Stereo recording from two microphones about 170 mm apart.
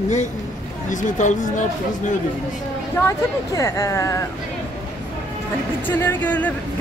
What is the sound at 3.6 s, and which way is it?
Speech, 15° left (ahead or behind).